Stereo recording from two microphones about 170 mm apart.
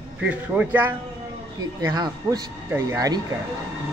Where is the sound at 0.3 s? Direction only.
10° right (ahead or behind).